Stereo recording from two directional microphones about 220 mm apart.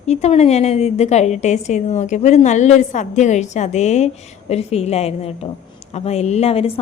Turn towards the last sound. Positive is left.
turn(degrees=25)  # may be behind; listen again after turning